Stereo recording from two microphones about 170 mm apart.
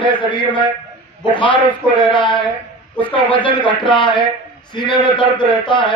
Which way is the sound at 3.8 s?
30° left (ahead or behind).